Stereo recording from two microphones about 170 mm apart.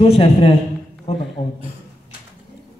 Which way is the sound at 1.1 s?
40° left (ahead or behind).